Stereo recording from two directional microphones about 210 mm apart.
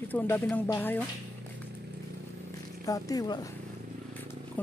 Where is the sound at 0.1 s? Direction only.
10° left (ahead or behind).